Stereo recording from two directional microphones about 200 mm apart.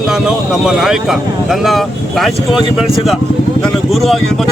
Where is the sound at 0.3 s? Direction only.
5° right (ahead or behind).